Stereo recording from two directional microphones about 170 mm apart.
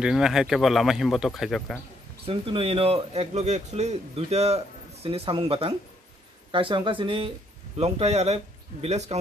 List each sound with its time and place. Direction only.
0.0 s speech: 5° right (ahead or behind)
2.2 s speech: 35° right (ahead or behind)